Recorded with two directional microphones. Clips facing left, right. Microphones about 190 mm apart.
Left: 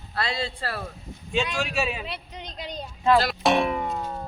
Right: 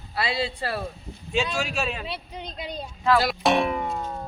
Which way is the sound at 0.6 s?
20° right (ahead or behind).